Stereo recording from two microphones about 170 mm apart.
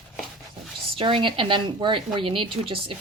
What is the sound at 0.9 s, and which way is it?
Speech, 30° right (ahead or behind).